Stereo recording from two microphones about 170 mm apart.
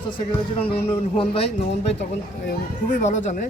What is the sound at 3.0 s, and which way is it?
Speech, 45° left (ahead or behind).